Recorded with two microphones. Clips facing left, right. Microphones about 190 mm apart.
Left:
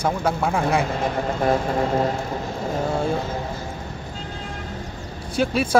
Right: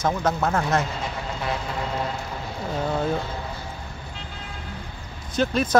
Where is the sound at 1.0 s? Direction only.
50° left (ahead or behind).